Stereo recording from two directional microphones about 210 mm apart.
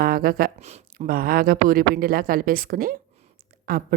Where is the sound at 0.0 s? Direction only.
45° right (ahead or behind).